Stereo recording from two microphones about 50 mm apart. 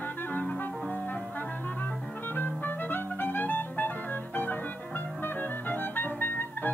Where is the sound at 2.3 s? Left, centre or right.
Left.